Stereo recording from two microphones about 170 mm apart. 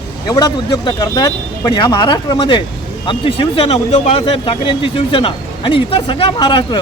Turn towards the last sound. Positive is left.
turn(degrees=25)  # may be behind; listen again after turning